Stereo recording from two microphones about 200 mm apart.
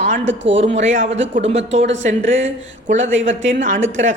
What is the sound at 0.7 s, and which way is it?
A woman's voice, 35° right (ahead or behind).